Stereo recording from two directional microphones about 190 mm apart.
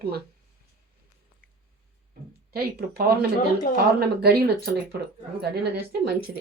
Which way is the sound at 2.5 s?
55° right (ahead or behind).